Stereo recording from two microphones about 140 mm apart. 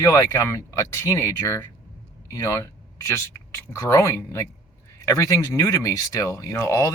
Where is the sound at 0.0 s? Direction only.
20° left (ahead or behind).